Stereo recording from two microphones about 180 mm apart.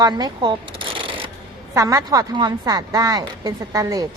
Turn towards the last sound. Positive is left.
turn(degrees=-20)  # may be behind; listen again after turning